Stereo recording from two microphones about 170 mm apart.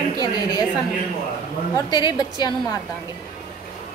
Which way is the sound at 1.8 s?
25° left (ahead or behind).